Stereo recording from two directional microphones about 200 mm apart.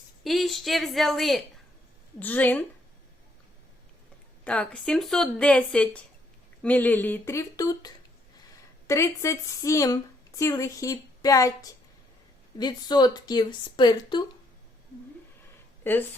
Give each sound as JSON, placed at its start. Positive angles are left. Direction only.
{"t": 0.3, "sound": "a woman's voice", "side_deg": 0}
{"t": 4.4, "sound": "a woman's voice", "side_deg": 5}
{"t": 15.8, "sound": "speech", "side_deg": 10}